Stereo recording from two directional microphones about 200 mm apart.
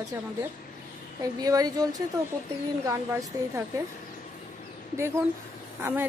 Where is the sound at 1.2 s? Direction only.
20° right (ahead or behind).